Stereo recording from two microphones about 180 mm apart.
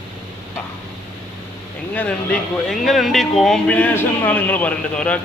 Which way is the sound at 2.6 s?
Centre (ahead or behind).